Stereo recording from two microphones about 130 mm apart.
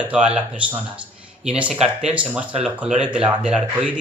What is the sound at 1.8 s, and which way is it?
Speech, 55° right (ahead or behind).